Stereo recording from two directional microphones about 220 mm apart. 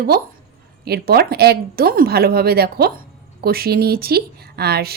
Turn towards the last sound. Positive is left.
turn(degrees=-45)  # may be behind; listen again after turning